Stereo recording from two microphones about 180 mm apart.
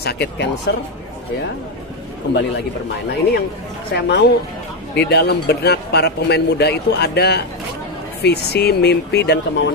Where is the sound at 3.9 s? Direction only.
65° left (ahead or behind).